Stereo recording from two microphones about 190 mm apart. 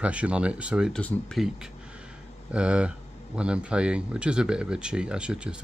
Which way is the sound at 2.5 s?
5° right (ahead or behind).